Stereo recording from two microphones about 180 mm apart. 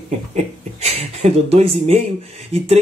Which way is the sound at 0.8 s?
35° right (ahead or behind).